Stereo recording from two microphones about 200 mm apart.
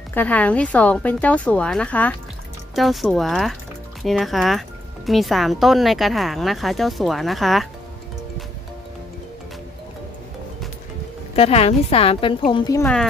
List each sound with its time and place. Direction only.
0.1 s speech: 10° left (ahead or behind)
11.3 s a woman's voice: 30° left (ahead or behind)